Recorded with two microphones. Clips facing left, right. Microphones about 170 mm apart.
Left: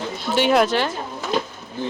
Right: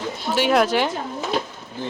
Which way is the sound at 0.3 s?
Centre (ahead or behind).